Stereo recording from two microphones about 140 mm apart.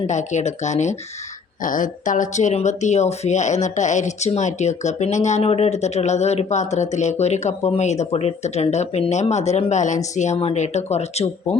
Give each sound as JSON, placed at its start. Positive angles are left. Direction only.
{"t": 0.1, "sound": "speech", "side_deg": 55}
{"t": 1.6, "sound": "speech", "side_deg": 70}